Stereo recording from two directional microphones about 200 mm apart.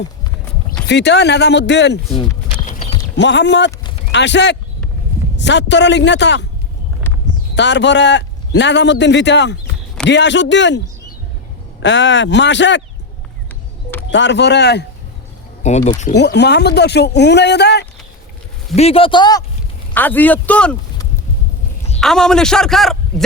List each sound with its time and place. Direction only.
0.9 s a man's voice: 60° left (ahead or behind)
2.6 s clip-clop: 40° left (ahead or behind)
3.2 s a man's voice: 60° left (ahead or behind)
7.5 s a man's voice: 60° left (ahead or behind)
11.8 s a man's voice: 65° left (ahead or behind)
14.1 s a man's voice: 60° left (ahead or behind)
15.6 s speech: 35° left (ahead or behind)
16.1 s a man's voice: 55° left (ahead or behind)
18.8 s a man's voice: 30° left (ahead or behind)
19.9 s a man's voice: 10° left (ahead or behind)
22.0 s a man's voice: 5° left (ahead or behind)